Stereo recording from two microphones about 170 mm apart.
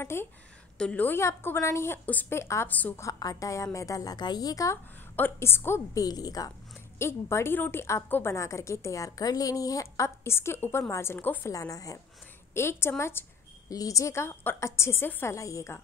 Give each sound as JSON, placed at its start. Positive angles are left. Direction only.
{"t": 0.0, "sound": "a woman's voice", "side_deg": 15}